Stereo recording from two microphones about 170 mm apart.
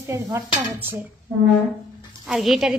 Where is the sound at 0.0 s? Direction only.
15° right (ahead or behind).